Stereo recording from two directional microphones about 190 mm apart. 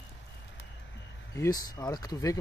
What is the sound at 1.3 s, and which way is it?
Speech, 15° left (ahead or behind).